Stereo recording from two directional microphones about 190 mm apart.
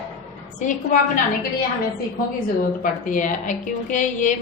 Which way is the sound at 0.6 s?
40° left (ahead or behind).